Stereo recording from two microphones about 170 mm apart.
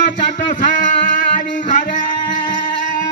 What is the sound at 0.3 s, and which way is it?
Music, 50° left (ahead or behind).